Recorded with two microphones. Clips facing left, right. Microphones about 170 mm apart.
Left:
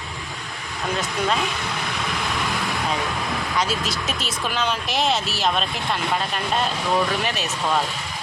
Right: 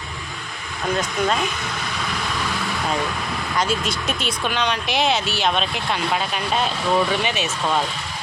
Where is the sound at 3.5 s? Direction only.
Centre (ahead or behind).